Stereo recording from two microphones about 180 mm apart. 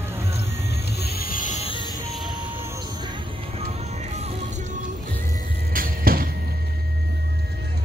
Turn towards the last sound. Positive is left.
turn(degrees=-55)  # may be behind; listen again after turning